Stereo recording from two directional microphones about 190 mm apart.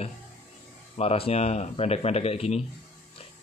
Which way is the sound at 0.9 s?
30° left (ahead or behind).